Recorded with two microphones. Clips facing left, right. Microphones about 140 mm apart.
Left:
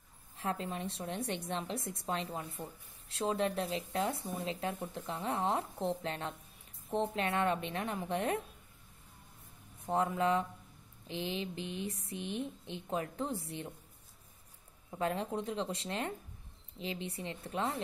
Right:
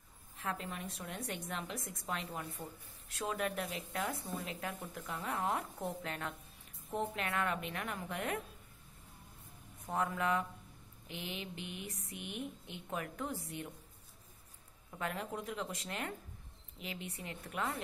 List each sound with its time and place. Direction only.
0.4 s a woman's voice: 30° left (ahead or behind)
9.8 s a woman's voice: 30° left (ahead or behind)
14.9 s a woman's voice: 30° left (ahead or behind)